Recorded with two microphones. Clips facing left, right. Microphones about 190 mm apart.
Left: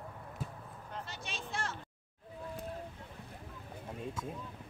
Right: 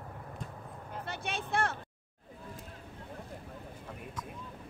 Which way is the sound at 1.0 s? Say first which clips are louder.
Right 6 dB; 60° right (ahead or behind).